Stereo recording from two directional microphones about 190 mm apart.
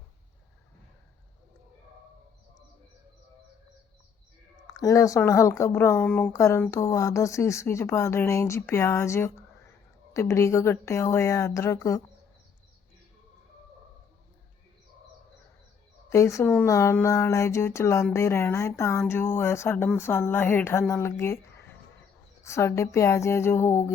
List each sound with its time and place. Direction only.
4.6 s speech: 20° left (ahead or behind)
16.0 s speech: 15° left (ahead or behind)
22.4 s speech: 15° left (ahead or behind)